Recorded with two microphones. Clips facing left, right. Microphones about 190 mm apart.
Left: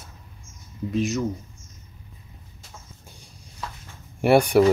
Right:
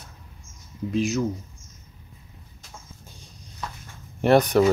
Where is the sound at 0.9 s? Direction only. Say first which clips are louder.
Right 1 dB; centre (ahead or behind).